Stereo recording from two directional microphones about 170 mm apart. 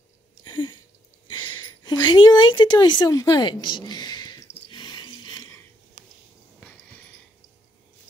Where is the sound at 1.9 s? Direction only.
25° left (ahead or behind).